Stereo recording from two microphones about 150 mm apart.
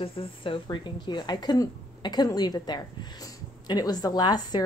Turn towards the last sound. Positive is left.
turn(degrees=30)  # may be behind; listen again after turning